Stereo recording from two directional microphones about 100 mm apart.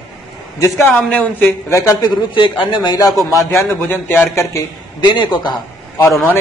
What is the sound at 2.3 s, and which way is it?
Speech, 55° left (ahead or behind).